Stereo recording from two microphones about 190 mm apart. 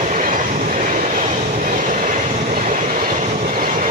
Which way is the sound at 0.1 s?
45° right (ahead or behind).